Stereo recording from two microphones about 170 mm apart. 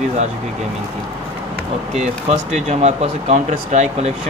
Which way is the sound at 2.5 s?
40° right (ahead or behind).